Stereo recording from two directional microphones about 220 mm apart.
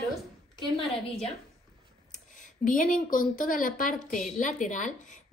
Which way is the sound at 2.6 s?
35° left (ahead or behind).